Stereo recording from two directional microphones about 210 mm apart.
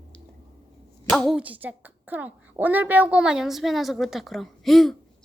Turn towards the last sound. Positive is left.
turn(degrees=0)  # may be behind; listen again after turning